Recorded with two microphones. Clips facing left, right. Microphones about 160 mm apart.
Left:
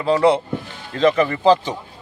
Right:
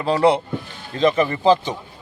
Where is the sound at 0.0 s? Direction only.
35° right (ahead or behind).